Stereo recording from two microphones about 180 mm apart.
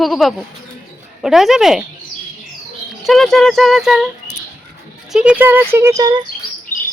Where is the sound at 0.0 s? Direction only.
Centre (ahead or behind).